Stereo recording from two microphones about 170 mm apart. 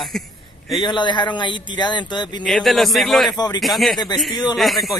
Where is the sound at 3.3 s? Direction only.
25° left (ahead or behind).